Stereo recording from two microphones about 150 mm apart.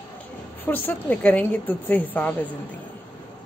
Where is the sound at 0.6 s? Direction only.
10° left (ahead or behind).